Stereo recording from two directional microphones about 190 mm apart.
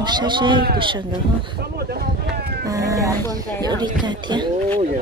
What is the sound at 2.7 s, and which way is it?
Speech, 15° right (ahead or behind).